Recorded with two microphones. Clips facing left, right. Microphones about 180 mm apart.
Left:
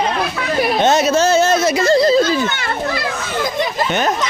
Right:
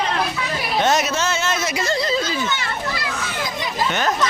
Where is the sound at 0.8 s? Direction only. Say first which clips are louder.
Left 4 dB; 25° left (ahead or behind).